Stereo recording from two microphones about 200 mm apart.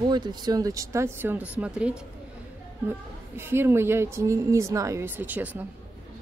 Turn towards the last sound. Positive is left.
turn(degrees=-10)  # may be behind; listen again after turning